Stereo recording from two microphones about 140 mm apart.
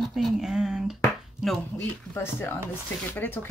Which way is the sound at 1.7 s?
15° left (ahead or behind).